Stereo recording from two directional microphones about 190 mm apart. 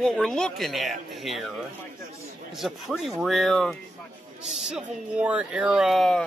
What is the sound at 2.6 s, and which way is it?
A man's voice, centre (ahead or behind).